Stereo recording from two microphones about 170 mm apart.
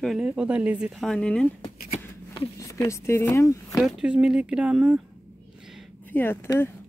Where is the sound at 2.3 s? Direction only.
20° left (ahead or behind).